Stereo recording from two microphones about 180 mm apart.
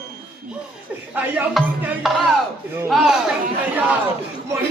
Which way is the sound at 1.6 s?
Centre (ahead or behind).